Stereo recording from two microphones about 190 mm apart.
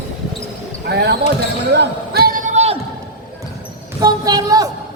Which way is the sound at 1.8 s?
55° right (ahead or behind).